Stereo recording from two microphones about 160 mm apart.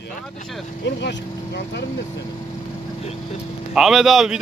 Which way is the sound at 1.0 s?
90° left.